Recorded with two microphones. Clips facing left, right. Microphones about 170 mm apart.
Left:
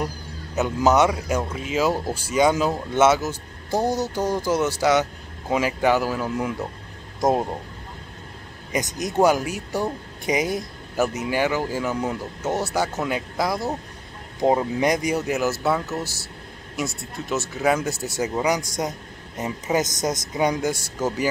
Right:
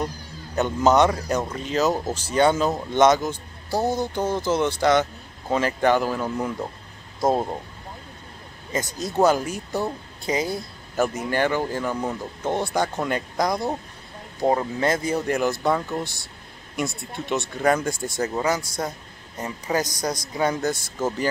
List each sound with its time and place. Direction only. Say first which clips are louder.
0.6 s speech: even; 5° left (ahead or behind)
7.2 s speech: left 1 dB; 15° left (ahead or behind)
8.7 s speech: left 1 dB; 15° left (ahead or behind)
14.4 s speech: left 2 dB; 15° left (ahead or behind)